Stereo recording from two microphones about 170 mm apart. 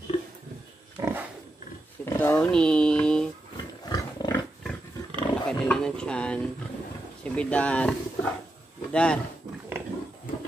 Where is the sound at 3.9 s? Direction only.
20° left (ahead or behind).